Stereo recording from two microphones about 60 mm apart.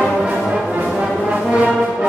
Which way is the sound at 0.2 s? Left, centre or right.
Centre.